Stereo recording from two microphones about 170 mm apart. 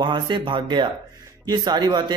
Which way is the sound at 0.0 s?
25° right (ahead or behind).